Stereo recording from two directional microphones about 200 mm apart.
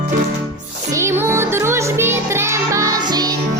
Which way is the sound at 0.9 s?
15° right (ahead or behind).